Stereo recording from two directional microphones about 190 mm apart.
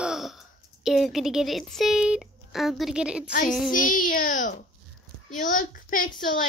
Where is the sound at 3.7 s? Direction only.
45° left (ahead or behind).